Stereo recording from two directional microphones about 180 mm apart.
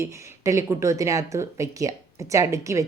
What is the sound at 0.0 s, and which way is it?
Speech, 15° right (ahead or behind).